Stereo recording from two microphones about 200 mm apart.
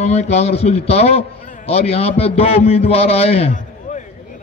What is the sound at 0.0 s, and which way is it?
A man's voice, 35° left (ahead or behind).